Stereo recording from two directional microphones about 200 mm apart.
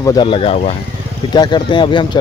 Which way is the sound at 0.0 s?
20° left (ahead or behind).